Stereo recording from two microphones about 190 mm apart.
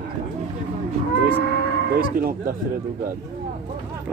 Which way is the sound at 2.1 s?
50° right (ahead or behind).